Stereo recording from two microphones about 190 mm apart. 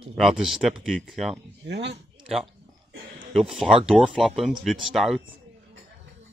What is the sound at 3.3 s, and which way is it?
Speech, centre (ahead or behind).